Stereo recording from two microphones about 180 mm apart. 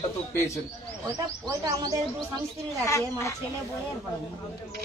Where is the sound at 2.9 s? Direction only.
15° left (ahead or behind).